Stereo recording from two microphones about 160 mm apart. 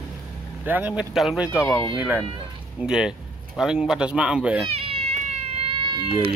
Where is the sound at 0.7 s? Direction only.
10° right (ahead or behind).